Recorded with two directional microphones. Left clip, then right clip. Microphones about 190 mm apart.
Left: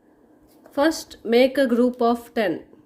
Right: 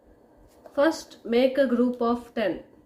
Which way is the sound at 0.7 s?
50° left (ahead or behind).